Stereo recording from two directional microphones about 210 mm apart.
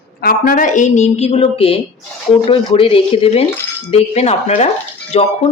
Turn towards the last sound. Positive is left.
turn(degrees=30)  # may be behind; listen again after turning